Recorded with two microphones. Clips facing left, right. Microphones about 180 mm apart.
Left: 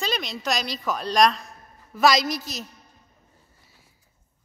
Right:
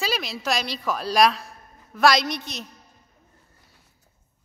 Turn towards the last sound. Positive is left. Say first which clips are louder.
# even
turn(degrees=0)  # may be behind; listen again after turning